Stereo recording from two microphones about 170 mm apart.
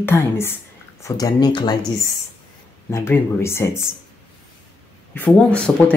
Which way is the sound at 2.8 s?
15° left (ahead or behind).